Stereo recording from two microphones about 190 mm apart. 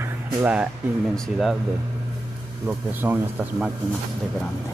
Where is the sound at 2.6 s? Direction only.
10° right (ahead or behind).